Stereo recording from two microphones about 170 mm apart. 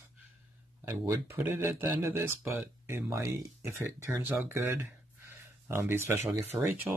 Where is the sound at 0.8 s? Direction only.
15° right (ahead or behind).